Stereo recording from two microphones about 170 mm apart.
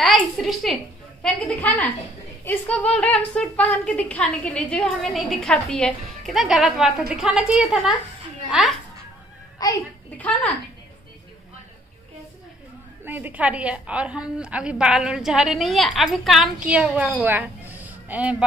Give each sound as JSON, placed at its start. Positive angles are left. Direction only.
{"t": 0.4, "sound": "a woman's voice", "side_deg": 0}
{"t": 9.6, "sound": "speech", "side_deg": 20}
{"t": 10.1, "sound": "a woman's voice", "side_deg": 10}
{"t": 13.0, "sound": "a woman's voice", "side_deg": -10}